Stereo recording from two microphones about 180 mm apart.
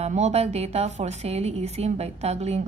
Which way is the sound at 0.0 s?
40° right (ahead or behind).